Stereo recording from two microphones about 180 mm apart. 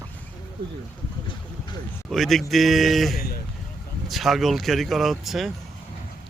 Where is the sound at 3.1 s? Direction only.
60° left (ahead or behind).